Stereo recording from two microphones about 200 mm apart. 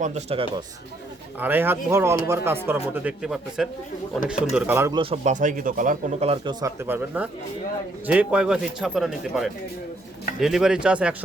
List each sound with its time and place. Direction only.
0.0 s speech: 35° right (ahead or behind)
1.4 s speech: 10° right (ahead or behind)
4.9 s a man's voice: 30° right (ahead or behind); by 11.1 s 5° right (ahead or behind)